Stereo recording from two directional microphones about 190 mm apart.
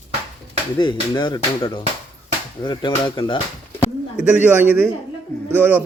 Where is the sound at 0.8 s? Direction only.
20° left (ahead or behind).